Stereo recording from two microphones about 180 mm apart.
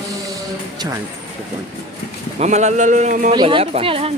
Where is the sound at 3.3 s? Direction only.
25° right (ahead or behind).